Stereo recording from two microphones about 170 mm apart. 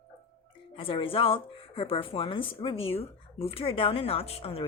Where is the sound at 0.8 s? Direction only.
30° left (ahead or behind).